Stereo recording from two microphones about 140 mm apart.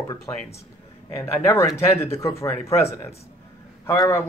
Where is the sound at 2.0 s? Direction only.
20° left (ahead or behind).